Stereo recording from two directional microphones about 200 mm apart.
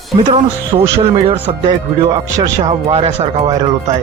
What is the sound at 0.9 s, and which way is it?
Speech, 30° right (ahead or behind).